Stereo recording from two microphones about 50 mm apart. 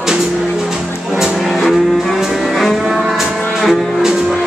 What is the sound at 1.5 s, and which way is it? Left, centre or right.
Music, centre.